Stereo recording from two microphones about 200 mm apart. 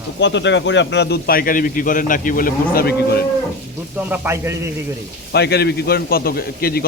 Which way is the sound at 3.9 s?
10° right (ahead or behind).